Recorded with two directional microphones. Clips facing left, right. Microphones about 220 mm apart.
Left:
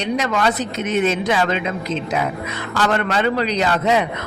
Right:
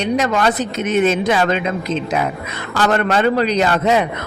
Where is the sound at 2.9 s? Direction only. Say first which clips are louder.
Right 5 dB; 45° right (ahead or behind).